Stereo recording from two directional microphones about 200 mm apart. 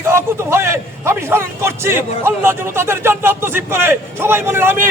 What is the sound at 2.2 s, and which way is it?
Speech, 10° right (ahead or behind).